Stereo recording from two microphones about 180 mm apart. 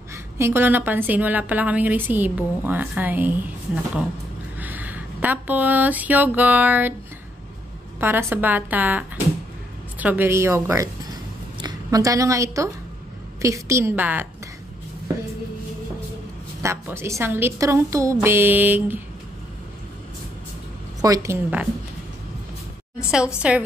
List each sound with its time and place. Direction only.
0.1 s a woman's voice: 15° right (ahead or behind)
4.6 s speech: 10° right (ahead or behind)
8.0 s a woman's voice: 10° right (ahead or behind)
16.6 s a woman's voice: 15° right (ahead or behind)
21.0 s a woman's voice: 20° right (ahead or behind)
23.1 s a woman's voice: 5° right (ahead or behind)